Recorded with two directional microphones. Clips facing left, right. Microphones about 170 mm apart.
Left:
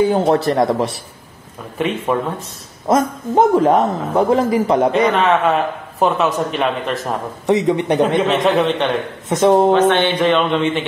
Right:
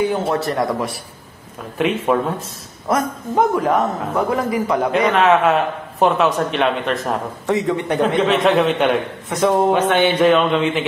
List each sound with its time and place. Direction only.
0.3 s a man's voice: 30° left (ahead or behind)
1.8 s a man's voice: centre (ahead or behind)
2.9 s a man's voice: 25° left (ahead or behind)
5.1 s a man's voice: centre (ahead or behind)
7.4 s a man's voice: 20° left (ahead or behind)
8.0 s a man's voice: centre (ahead or behind)
9.3 s a man's voice: 25° left (ahead or behind)
9.7 s a man's voice: 10° right (ahead or behind)